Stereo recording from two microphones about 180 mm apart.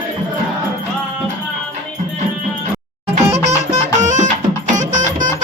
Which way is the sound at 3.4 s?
40° right (ahead or behind).